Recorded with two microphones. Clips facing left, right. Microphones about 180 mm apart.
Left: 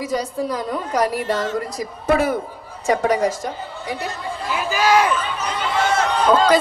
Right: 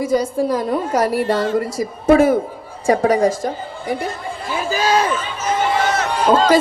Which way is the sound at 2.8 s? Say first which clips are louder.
Right 3 dB; 30° right (ahead or behind).